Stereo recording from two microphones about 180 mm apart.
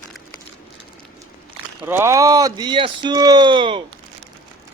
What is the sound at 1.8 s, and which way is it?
Speech, 15° right (ahead or behind).